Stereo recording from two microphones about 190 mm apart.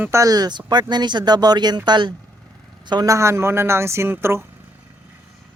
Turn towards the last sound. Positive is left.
turn(degrees=-10)  # may be behind; listen again after turning